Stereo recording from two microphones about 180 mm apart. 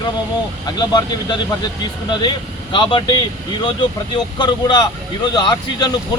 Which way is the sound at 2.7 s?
25° left (ahead or behind).